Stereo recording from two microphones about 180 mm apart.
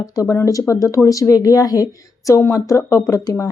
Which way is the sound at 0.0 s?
20° left (ahead or behind).